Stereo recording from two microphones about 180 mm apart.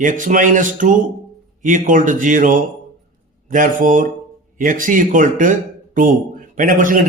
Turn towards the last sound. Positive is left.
turn(degrees=-50)  # may be behind; listen again after turning